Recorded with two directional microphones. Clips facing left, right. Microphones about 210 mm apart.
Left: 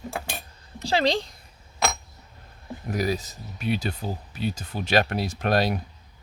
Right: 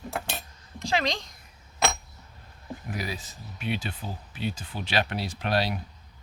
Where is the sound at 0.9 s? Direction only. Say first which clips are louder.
Left 5 dB; 30° left (ahead or behind).